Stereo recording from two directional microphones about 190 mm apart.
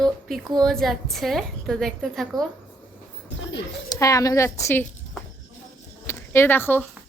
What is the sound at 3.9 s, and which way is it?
A woman's voice, 15° left (ahead or behind).